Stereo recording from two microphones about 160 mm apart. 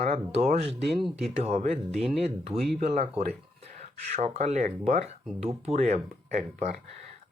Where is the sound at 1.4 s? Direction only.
40° right (ahead or behind).